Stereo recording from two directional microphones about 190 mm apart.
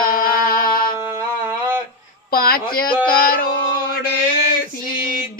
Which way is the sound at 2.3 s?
50° left (ahead or behind).